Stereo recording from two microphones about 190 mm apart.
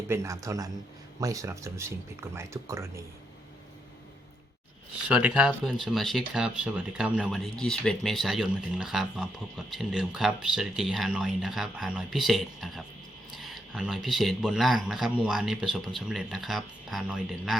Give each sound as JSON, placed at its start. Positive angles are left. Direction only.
{"t": 0.1, "sound": "speech", "side_deg": -15}
{"t": 5.0, "sound": "speech", "side_deg": -5}